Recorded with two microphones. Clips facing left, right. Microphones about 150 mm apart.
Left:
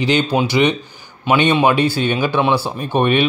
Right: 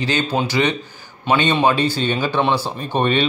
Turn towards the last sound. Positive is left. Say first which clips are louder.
# left 3 dB
turn(degrees=10)  # may be behind; listen again after turning